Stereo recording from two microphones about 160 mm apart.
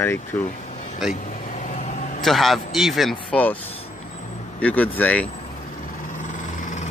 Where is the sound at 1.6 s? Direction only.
50° left (ahead or behind).